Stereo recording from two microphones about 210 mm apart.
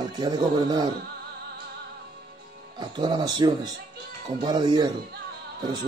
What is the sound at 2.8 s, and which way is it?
Speech, 20° right (ahead or behind).